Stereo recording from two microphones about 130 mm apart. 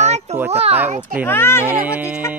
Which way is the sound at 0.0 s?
60° right (ahead or behind).